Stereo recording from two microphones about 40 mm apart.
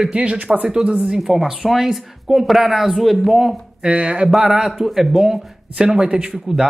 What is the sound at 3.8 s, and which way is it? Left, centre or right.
Speech, right.